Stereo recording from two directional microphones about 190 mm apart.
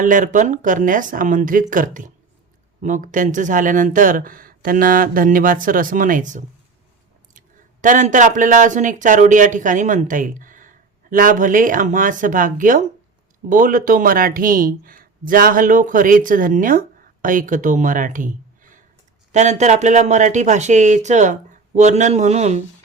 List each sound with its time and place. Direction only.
0.0 s speech: 40° right (ahead or behind)